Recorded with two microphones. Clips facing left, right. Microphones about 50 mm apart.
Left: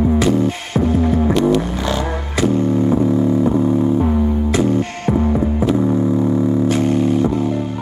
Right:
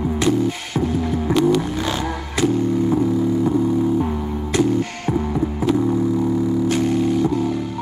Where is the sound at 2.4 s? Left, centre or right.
Left.